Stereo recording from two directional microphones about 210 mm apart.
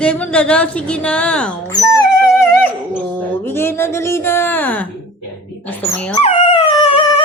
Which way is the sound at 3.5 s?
10° left (ahead or behind).